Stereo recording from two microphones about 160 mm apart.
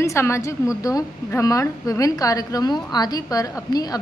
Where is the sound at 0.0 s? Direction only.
15° left (ahead or behind).